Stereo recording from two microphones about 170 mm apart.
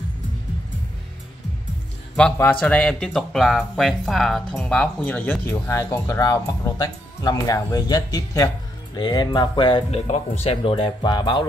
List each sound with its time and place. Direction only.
2.6 s speech: 5° left (ahead or behind); by 9.8 s 25° left (ahead or behind)
9.8 s speech: 40° left (ahead or behind)